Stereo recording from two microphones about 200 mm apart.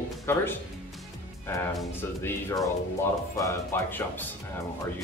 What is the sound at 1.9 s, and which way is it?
Speech, 15° left (ahead or behind).